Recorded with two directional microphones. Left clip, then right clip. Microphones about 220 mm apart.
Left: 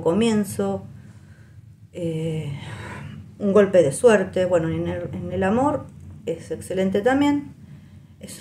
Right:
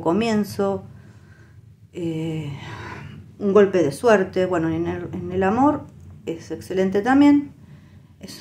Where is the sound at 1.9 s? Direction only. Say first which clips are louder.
Even; 25° right (ahead or behind).